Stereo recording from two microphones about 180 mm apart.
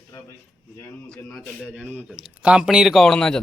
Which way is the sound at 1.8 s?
5° right (ahead or behind).